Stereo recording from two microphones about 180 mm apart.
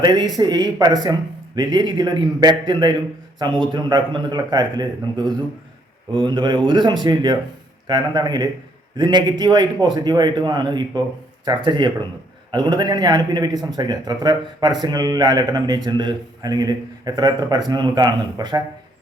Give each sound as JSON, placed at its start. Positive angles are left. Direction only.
{"t": 0.0, "sound": "a man's voice", "side_deg": -25}